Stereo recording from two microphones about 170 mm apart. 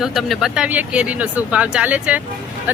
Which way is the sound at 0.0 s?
Centre (ahead or behind).